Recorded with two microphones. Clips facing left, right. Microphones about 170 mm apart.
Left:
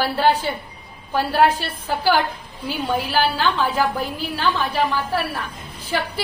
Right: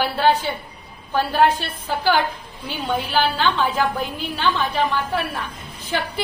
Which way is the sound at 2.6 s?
5° left (ahead or behind).